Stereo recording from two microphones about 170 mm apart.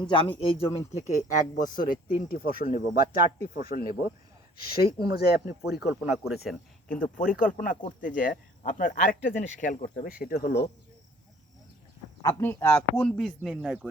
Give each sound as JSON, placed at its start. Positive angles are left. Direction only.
{"t": 0.0, "sound": "speech", "side_deg": 30}
{"t": 0.9, "sound": "speech", "side_deg": 45}
{"t": 5.9, "sound": "speech", "side_deg": -5}
{"t": 7.3, "sound": "speech", "side_deg": 55}
{"t": 12.2, "sound": "speech", "side_deg": 15}